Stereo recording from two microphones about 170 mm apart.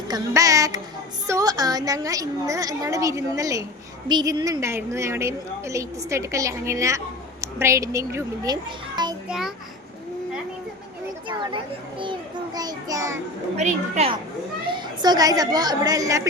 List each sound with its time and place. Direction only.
0.1 s a child's voice: 20° right (ahead or behind)
11.3 s a child's voice: 25° right (ahead or behind)
13.6 s a woman's voice: 40° right (ahead or behind)
14.7 s speech: 25° right (ahead or behind)